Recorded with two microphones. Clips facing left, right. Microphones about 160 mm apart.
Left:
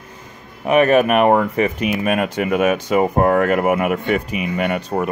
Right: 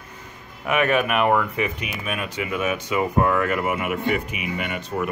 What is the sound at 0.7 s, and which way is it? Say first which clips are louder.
Speech: left 7 dB; 40° left (ahead or behind).